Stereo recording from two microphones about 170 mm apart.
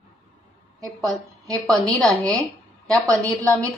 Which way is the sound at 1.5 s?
Centre (ahead or behind).